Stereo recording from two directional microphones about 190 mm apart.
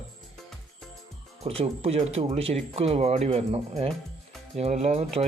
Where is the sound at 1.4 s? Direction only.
35° right (ahead or behind).